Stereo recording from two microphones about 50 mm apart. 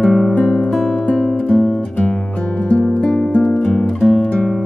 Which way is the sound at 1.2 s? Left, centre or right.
Centre.